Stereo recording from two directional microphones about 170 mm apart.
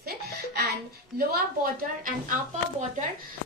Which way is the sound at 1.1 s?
60° right (ahead or behind).